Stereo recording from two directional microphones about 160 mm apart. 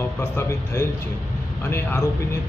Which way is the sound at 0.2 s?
15° left (ahead or behind).